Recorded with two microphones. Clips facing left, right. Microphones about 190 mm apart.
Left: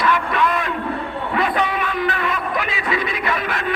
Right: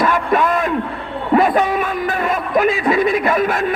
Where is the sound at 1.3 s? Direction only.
45° right (ahead or behind).